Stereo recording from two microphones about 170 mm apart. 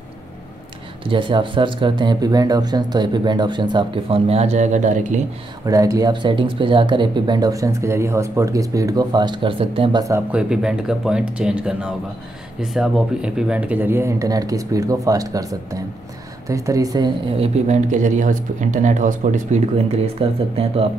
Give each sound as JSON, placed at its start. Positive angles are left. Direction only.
{"t": 1.0, "sound": "speech", "side_deg": -30}
{"t": 5.7, "sound": "speech", "side_deg": -20}
{"t": 10.3, "sound": "speech", "side_deg": -5}
{"t": 17.4, "sound": "speech", "side_deg": -45}